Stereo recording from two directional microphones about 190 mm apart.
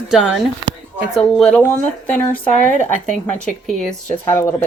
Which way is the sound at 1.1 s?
Centre (ahead or behind).